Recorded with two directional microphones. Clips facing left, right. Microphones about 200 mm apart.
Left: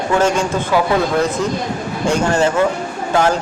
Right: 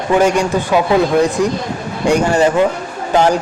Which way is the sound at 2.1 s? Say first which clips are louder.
Right 3 dB; 15° right (ahead or behind).